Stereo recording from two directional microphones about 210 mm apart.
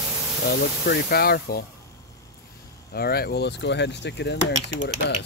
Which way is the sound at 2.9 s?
50° left (ahead or behind).